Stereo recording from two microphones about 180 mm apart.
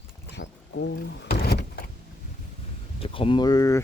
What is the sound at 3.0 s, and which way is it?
Speech, 30° left (ahead or behind).